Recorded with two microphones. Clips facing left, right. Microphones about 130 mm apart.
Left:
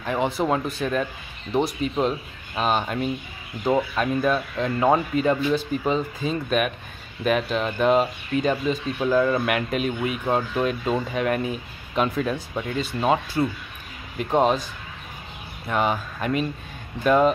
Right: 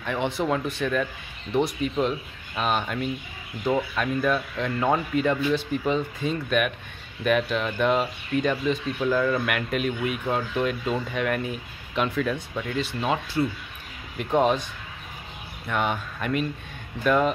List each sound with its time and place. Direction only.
0.0 s speech: 35° left (ahead or behind)
14.3 s speech: 35° left (ahead or behind)